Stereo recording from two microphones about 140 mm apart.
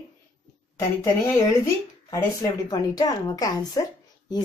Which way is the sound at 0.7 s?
20° left (ahead or behind).